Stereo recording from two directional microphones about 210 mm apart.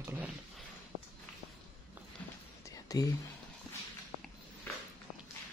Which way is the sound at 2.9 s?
15° left (ahead or behind).